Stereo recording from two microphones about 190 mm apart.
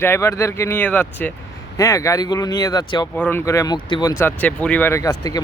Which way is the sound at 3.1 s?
10° left (ahead or behind).